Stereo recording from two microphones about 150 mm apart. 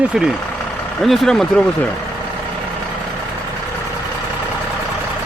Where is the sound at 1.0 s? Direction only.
Centre (ahead or behind).